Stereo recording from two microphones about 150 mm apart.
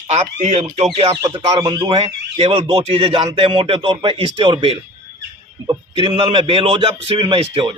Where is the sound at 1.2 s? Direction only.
30° right (ahead or behind).